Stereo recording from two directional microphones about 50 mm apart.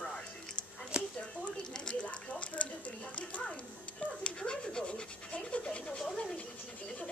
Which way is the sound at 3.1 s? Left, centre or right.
Left.